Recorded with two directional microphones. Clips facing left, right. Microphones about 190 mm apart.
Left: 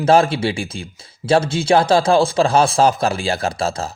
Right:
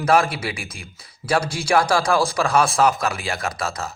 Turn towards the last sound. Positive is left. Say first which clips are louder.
# left 5 dB
turn(degrees=30)  # may be behind; listen again after turning